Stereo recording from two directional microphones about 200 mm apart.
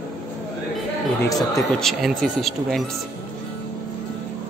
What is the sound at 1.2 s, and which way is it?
Speech, 15° left (ahead or behind).